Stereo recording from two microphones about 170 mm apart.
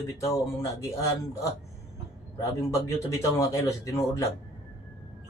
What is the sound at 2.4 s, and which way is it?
Speech, 20° left (ahead or behind).